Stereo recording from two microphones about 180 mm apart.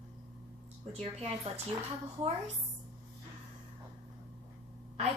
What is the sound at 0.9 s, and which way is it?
Child singing, 35° right (ahead or behind).